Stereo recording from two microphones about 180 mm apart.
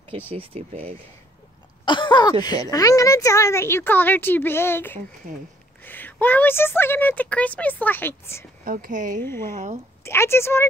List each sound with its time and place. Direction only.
0.6 s speech: 35° right (ahead or behind)
1.9 s a woman's voice: 25° left (ahead or behind)
8.6 s speech: 50° right (ahead or behind)
10.0 s a woman's voice: 15° left (ahead or behind)